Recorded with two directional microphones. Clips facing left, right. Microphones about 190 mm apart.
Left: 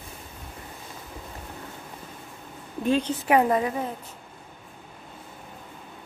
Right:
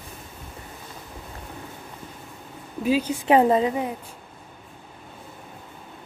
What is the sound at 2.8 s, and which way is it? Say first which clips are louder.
Speech: right 1 dB; 5° right (ahead or behind).